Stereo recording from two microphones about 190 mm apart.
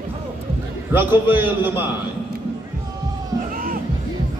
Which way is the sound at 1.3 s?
10° right (ahead or behind).